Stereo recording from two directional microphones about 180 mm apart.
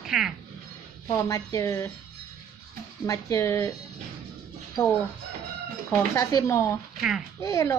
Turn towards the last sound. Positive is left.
turn(degrees=15)  # may be behind; listen again after turning